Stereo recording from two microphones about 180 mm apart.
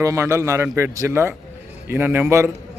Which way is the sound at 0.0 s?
15° right (ahead or behind).